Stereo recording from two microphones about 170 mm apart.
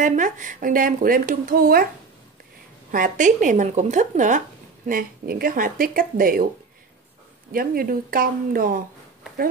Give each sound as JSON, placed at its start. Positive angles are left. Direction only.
{"t": 0.0, "sound": "speech", "side_deg": -50}
{"t": 2.9, "sound": "speech", "side_deg": -50}
{"t": 4.8, "sound": "speech", "side_deg": -60}
{"t": 7.5, "sound": "speech", "side_deg": -60}